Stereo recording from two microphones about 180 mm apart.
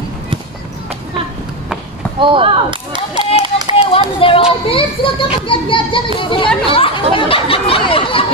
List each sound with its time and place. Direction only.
2.1 s speech: 30° right (ahead or behind)
3.4 s run: 25° right (ahead or behind)
3.7 s a child's voice: 30° left (ahead or behind)
6.7 s a sound: 30° left (ahead or behind)